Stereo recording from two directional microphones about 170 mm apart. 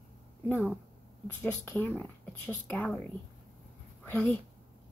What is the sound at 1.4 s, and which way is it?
Speech, 10° left (ahead or behind).